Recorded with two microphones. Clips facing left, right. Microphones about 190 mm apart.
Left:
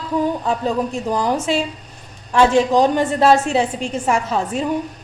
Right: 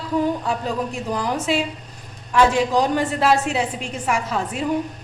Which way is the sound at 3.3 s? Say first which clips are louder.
Left 4 dB; 25° left (ahead or behind).